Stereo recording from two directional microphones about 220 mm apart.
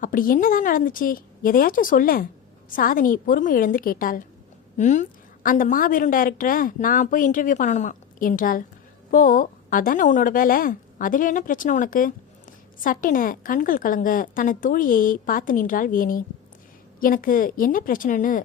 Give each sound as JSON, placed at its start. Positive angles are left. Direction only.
{"t": 0.0, "sound": "a woman's voice", "side_deg": 40}